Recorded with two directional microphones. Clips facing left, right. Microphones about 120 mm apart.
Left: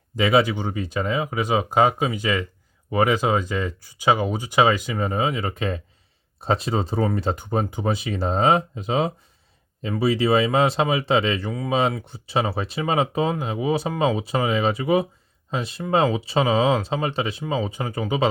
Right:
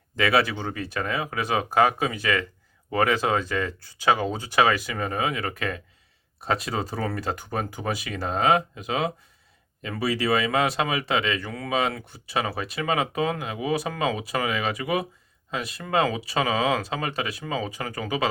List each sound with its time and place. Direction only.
0.2 s speech: 20° left (ahead or behind)